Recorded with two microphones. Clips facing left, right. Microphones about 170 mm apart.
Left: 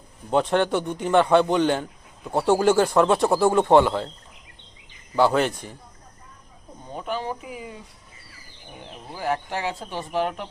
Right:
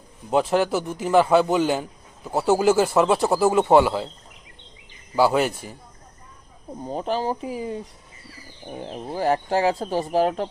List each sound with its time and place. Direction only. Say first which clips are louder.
0.3 s a man's voice: right 1 dB; 5° right (ahead or behind)
5.1 s speech: right 1 dB; 5° right (ahead or behind)
6.8 s speech: right 5 dB; 35° right (ahead or behind)
8.8 s speech: right 6 dB; 40° right (ahead or behind)